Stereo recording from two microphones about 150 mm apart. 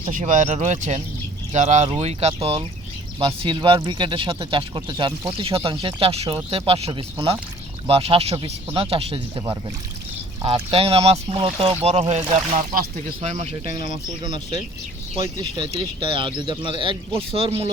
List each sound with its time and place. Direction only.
0.2 s speech: 55° right (ahead or behind); by 9.4 s 40° right (ahead or behind)
10.4 s speech: 40° right (ahead or behind)
15.7 s speech: 35° right (ahead or behind)